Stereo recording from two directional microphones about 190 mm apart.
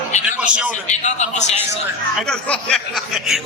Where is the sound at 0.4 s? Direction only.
5° right (ahead or behind).